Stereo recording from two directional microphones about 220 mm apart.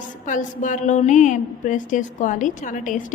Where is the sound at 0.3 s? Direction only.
35° left (ahead or behind).